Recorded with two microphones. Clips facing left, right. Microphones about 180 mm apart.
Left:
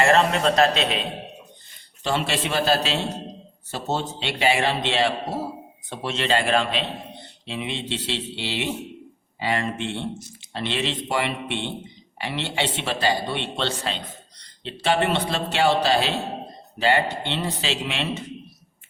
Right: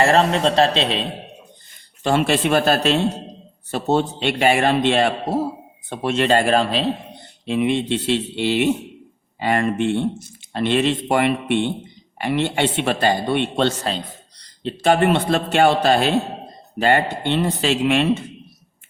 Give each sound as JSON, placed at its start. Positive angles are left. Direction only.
{"t": 0.0, "sound": "a man's voice", "side_deg": -35}
{"t": 2.0, "sound": "speech", "side_deg": -50}
{"t": 7.4, "sound": "speech", "side_deg": -50}